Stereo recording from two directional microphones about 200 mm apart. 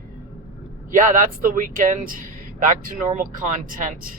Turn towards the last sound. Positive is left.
turn(degrees=-45)  # may be behind; listen again after turning